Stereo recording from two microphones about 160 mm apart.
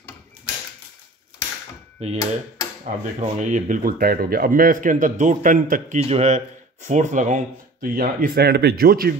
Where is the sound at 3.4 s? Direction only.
55° right (ahead or behind).